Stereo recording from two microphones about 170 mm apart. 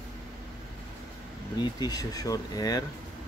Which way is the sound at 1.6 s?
25° left (ahead or behind).